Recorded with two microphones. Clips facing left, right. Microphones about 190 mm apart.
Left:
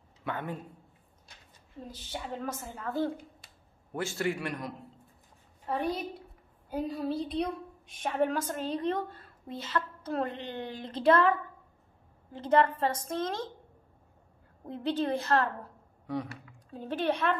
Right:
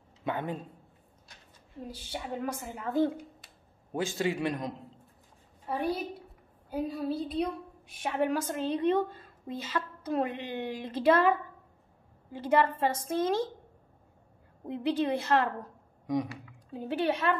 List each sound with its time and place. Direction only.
0.2 s a man's voice: 20° right (ahead or behind)
1.9 s a woman's voice: 10° right (ahead or behind)
6.7 s a woman's voice: 5° right (ahead or behind)
12.3 s a woman's voice: 10° right (ahead or behind)
14.7 s a woman's voice: 10° right (ahead or behind)